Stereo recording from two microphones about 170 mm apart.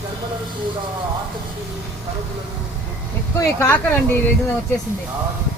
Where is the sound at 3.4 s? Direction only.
15° left (ahead or behind).